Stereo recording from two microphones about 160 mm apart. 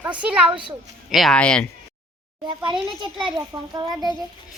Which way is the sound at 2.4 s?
30° right (ahead or behind).